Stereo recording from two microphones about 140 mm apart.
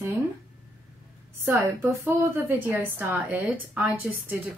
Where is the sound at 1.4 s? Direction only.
15° right (ahead or behind).